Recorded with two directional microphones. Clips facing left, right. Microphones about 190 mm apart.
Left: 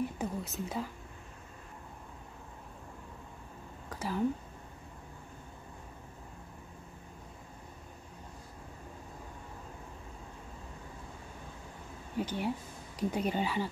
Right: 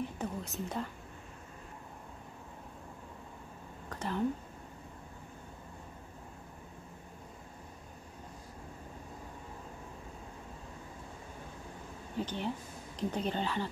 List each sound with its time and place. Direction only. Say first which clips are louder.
0.2 s speech: left 1 dB; 5° left (ahead or behind)
3.9 s whispering: left 1 dB; 5° left (ahead or behind)
12.2 s speech: left 2 dB; 10° left (ahead or behind)